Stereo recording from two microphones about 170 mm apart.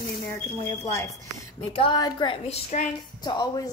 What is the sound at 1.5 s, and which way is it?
A woman's voice, 30° left (ahead or behind).